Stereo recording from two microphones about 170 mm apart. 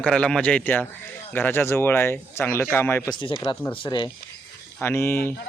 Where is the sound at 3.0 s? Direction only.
30° left (ahead or behind).